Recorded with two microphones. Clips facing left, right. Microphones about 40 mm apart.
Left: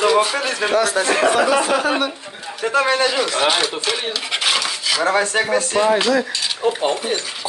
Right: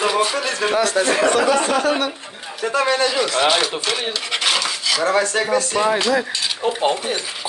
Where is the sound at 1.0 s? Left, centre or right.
Left.